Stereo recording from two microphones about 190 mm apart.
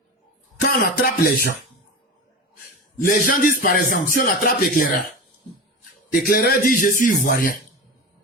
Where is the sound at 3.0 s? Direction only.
45° left (ahead or behind).